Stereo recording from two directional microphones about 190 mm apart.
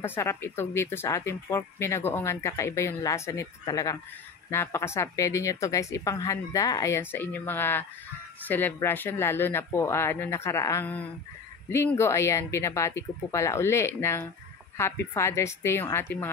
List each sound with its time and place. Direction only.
0.0 s speech: 10° left (ahead or behind)